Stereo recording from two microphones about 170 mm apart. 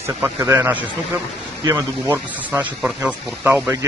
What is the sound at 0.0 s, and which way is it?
Speech, 15° right (ahead or behind).